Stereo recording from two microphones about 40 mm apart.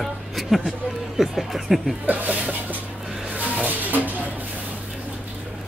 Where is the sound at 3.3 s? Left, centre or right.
Right.